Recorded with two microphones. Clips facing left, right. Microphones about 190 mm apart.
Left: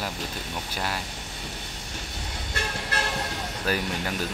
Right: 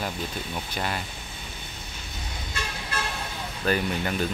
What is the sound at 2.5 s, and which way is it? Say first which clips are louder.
Toot: left 3 dB; 65° left (ahead or behind).